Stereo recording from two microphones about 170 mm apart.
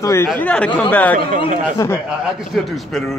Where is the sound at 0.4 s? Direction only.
5° left (ahead or behind).